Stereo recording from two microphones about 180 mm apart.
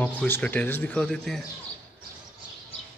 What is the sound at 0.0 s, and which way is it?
Speech, 5° left (ahead or behind).